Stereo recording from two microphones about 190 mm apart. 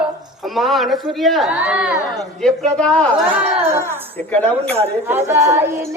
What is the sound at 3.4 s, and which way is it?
Singing, 10° right (ahead or behind).